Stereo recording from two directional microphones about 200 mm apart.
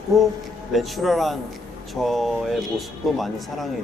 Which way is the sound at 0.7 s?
Centre (ahead or behind).